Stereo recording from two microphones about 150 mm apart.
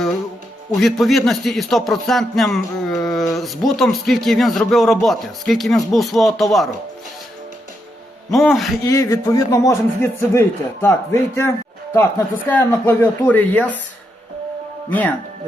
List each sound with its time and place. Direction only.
0.8 s a man's voice: centre (ahead or behind)
8.3 s a man's voice: centre (ahead or behind)
8.8 s speech: 20° left (ahead or behind)
14.8 s speech: 10° left (ahead or behind)